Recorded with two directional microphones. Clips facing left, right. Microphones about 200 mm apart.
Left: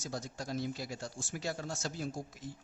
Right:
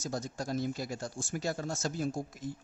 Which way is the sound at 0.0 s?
45° right (ahead or behind).